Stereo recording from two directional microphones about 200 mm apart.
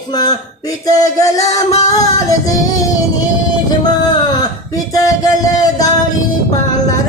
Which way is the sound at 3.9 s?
20° left (ahead or behind).